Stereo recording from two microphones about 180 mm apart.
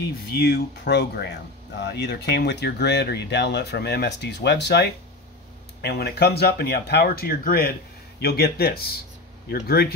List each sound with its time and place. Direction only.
0.4 s speech: 65° left (ahead or behind)